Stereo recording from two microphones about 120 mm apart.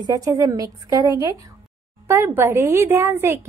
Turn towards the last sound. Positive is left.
turn(degrees=-20)  # may be behind; listen again after turning